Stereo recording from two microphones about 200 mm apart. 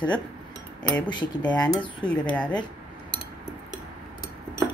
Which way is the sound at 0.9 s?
5° left (ahead or behind).